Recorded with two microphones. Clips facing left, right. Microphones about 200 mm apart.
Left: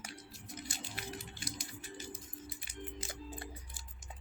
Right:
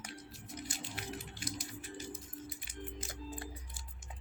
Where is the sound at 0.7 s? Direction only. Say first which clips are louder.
Right 1 dB; 5° right (ahead or behind).